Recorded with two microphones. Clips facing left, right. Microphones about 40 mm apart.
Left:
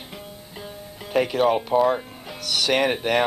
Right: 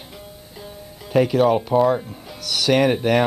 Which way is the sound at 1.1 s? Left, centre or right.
Centre.